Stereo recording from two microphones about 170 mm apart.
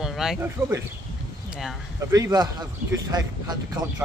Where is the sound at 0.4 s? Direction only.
15° right (ahead or behind).